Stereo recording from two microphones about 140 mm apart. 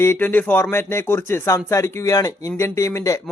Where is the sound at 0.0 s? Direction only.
15° left (ahead or behind).